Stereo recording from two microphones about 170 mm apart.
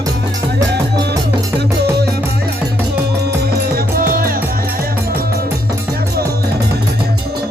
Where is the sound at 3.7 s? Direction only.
55° right (ahead or behind).